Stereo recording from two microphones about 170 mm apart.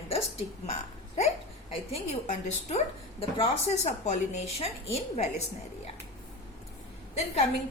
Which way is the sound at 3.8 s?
45° left (ahead or behind).